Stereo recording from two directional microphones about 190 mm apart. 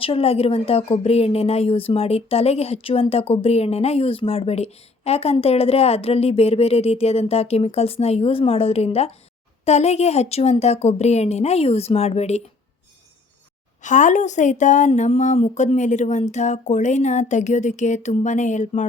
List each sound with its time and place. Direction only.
0.0 s speech: 30° left (ahead or behind)
13.8 s speech: 40° left (ahead or behind)